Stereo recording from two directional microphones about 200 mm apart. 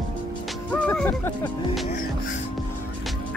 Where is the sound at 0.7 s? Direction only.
5° left (ahead or behind).